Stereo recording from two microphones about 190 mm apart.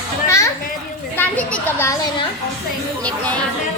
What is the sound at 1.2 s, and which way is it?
Speech, 10° left (ahead or behind).